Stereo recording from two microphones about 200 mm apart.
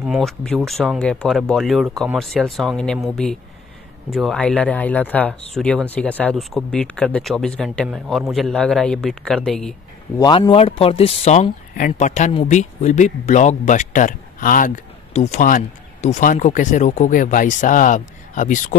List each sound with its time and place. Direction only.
0.0 s speech: centre (ahead or behind)
10.1 s speech: 20° left (ahead or behind); by 18.8 s 40° left (ahead or behind)